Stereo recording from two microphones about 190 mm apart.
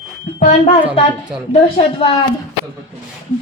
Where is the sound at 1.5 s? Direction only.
25° left (ahead or behind).